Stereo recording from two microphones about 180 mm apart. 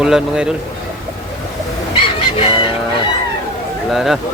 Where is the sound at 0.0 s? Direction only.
5° right (ahead or behind).